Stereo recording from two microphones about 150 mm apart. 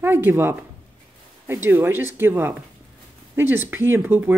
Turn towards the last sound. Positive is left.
turn(degrees=-15)  # may be behind; listen again after turning